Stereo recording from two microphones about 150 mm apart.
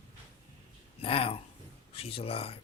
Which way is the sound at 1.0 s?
40° left (ahead or behind).